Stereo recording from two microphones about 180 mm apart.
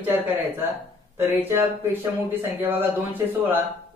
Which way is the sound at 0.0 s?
10° right (ahead or behind).